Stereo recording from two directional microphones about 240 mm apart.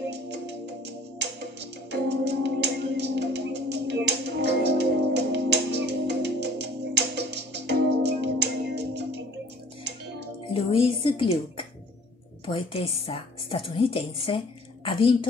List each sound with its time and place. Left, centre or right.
0.1 s music: right
10.5 s music: left
12.4 s a woman's voice: left